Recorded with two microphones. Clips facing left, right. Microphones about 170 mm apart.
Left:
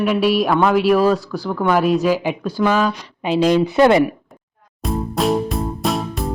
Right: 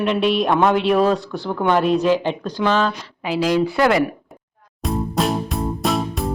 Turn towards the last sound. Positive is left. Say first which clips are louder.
# even
turn(degrees=0)  # may be behind; listen again after turning